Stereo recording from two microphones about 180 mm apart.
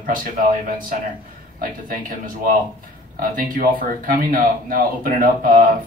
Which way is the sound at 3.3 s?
50° right (ahead or behind).